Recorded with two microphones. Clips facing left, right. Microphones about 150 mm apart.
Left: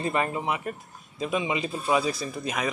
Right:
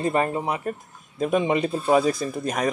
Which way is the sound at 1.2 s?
50° right (ahead or behind).